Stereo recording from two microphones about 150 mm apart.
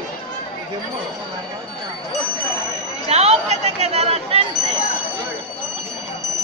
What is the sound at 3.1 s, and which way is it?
Chatter, 45° right (ahead or behind).